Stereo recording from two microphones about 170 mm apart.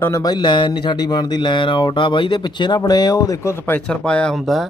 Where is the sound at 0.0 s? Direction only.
20° left (ahead or behind).